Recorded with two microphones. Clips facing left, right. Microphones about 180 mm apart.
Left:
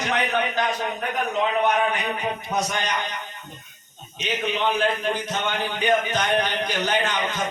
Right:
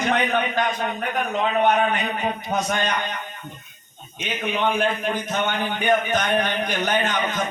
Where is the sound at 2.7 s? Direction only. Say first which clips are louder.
Right 3 dB; 50° right (ahead or behind).